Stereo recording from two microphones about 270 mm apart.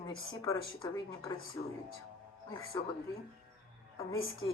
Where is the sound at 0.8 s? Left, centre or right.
Centre.